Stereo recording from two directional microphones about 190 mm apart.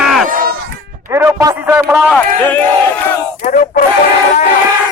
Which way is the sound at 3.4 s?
45° left (ahead or behind).